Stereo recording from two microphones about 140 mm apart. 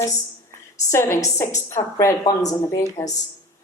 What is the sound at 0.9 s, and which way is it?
A woman's voice, 20° left (ahead or behind).